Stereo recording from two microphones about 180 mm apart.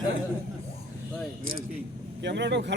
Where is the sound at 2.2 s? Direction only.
70° right (ahead or behind).